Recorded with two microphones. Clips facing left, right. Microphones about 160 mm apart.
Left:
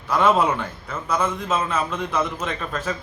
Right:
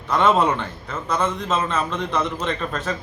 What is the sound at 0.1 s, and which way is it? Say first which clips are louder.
A man's voice: right 1 dB; 5° left (ahead or behind).